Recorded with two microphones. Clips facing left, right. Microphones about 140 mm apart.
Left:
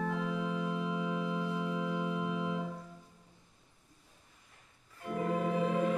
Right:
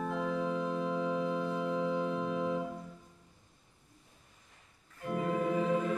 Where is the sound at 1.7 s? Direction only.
30° right (ahead or behind).